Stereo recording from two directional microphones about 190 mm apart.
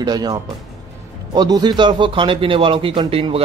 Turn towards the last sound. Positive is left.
turn(degrees=-30)  # may be behind; listen again after turning